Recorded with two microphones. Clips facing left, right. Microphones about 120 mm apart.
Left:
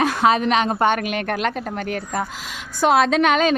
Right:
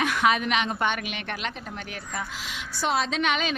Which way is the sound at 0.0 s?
35° left (ahead or behind).